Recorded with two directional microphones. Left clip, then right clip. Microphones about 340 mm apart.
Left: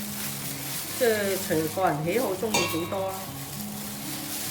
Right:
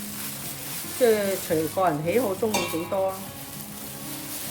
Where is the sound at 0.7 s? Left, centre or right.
Centre.